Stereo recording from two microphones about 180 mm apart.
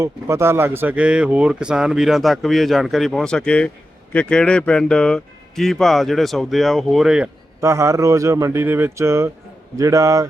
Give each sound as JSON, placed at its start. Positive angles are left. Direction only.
{"t": 0.0, "sound": "speech", "side_deg": -15}
{"t": 7.6, "sound": "speech", "side_deg": -15}